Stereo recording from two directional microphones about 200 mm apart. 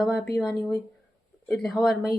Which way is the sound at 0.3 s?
5° left (ahead or behind).